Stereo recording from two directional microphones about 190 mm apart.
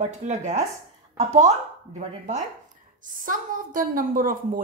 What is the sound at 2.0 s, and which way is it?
A woman's voice, 40° right (ahead or behind).